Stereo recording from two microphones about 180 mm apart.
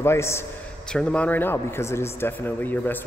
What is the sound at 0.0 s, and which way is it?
A man's voice, 15° left (ahead or behind).